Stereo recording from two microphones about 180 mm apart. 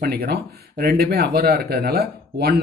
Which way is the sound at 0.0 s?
60° right (ahead or behind).